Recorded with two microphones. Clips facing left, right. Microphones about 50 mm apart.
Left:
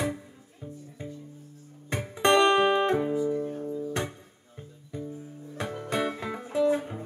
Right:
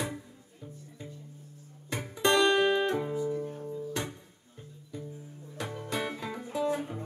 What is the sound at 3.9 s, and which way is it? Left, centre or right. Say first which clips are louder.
Music: left 4 dB; left.